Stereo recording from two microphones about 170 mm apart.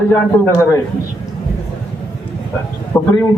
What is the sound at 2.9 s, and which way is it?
Speech, 10° left (ahead or behind).